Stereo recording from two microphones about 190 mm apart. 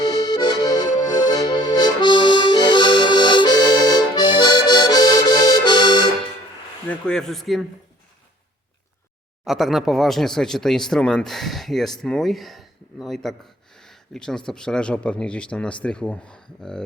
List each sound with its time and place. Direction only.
0.0 s accordion: 20° left (ahead or behind)
6.8 s speech: 5° left (ahead or behind)
9.4 s speech: centre (ahead or behind)